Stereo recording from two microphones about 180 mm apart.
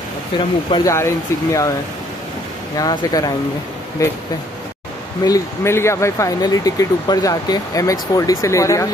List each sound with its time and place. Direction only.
0.7 s speech: 25° left (ahead or behind)
2.8 s speech: 20° left (ahead or behind)
5.2 s speech: 15° left (ahead or behind)